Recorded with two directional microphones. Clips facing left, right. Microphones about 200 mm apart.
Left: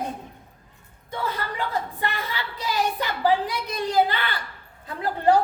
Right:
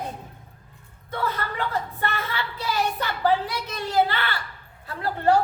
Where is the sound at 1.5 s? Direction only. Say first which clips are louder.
Even; 15° left (ahead or behind).